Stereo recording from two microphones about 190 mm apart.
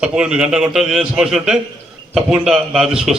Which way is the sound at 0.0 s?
5° right (ahead or behind).